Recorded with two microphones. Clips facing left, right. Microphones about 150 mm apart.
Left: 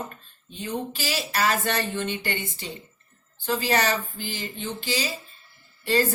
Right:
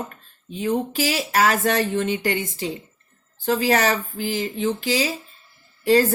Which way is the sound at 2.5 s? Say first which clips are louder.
Right 9 dB; 90° right.